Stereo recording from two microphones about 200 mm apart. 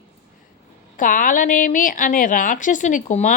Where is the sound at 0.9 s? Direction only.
40° left (ahead or behind).